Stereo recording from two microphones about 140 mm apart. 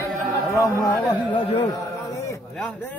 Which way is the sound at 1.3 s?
35° left (ahead or behind).